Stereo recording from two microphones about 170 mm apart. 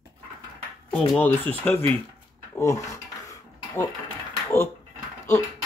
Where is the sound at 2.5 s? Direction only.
20° left (ahead or behind).